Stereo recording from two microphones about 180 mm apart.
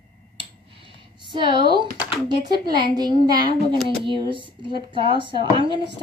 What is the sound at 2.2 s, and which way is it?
Speech, 25° right (ahead or behind).